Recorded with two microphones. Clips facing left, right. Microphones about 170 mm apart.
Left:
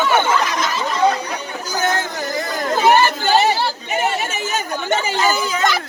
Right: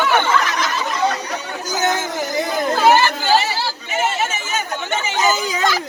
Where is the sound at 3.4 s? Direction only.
55° left (ahead or behind).